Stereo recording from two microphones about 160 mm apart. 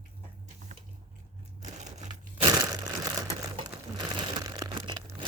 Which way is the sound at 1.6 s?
45° right (ahead or behind).